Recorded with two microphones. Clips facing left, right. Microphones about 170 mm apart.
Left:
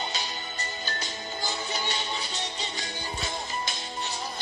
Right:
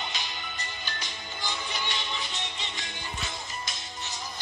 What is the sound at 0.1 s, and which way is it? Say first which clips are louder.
Music: left 3 dB; 40° left (ahead or behind).